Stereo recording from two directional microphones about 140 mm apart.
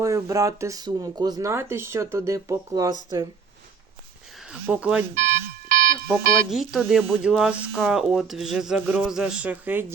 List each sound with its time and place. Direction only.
0.0 s speech: 25° right (ahead or behind)
4.6 s speech: 10° right (ahead or behind)
5.1 s alarm: 65° right (ahead or behind)
6.5 s speech: 5° right (ahead or behind)